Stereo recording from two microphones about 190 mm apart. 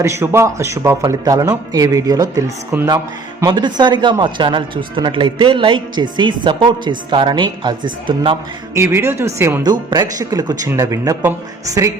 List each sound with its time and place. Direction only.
0.0 s a woman's voice: 15° right (ahead or behind)
8.7 s speech: 15° right (ahead or behind)